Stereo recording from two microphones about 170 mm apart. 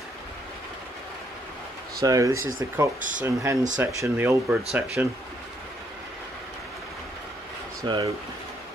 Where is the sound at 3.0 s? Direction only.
50° right (ahead or behind).